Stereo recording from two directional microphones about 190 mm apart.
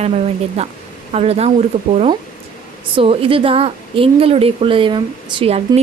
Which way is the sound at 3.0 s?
30° right (ahead or behind).